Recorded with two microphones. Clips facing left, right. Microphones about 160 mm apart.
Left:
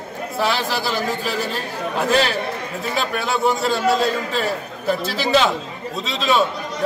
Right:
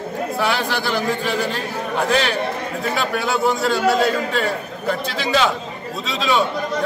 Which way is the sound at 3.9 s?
30° left (ahead or behind).